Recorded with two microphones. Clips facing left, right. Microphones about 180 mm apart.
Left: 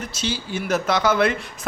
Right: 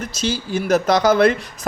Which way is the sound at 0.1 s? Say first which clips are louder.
Right 6 dB; 40° right (ahead or behind).